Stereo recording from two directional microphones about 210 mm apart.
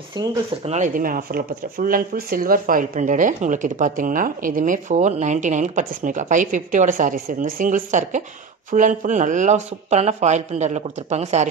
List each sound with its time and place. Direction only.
0.2 s speech: 20° right (ahead or behind)
0.7 s speech: 35° right (ahead or behind)